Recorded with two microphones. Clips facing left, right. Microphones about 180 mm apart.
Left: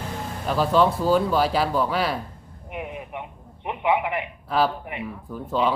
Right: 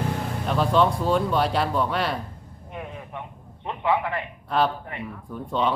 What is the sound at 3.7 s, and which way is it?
Speech, 15° left (ahead or behind).